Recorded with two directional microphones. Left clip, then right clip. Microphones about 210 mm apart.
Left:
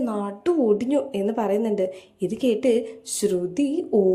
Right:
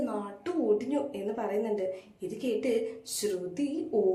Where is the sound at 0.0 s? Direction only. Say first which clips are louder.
Left 8 dB; 40° left (ahead or behind).